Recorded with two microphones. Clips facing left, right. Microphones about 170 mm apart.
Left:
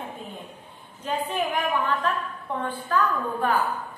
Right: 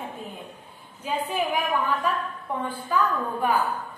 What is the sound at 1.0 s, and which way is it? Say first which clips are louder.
A woman's voice: even; 10° right (ahead or behind).